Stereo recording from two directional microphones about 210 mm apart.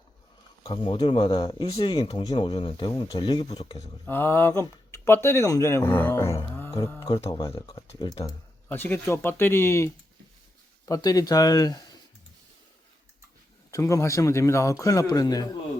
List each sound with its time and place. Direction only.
0.6 s speech: 25° left (ahead or behind)
4.0 s speech: 10° left (ahead or behind)
13.7 s speech: 15° left (ahead or behind)